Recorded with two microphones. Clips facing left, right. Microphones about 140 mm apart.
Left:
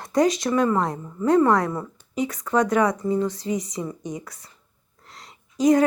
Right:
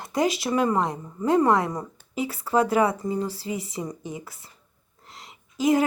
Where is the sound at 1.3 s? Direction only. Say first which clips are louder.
Left 2 dB; 25° right (ahead or behind).